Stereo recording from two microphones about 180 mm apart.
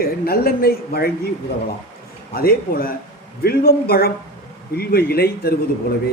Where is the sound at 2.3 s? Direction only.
55° left (ahead or behind).